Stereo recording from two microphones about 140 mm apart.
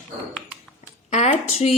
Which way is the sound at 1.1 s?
60° left (ahead or behind).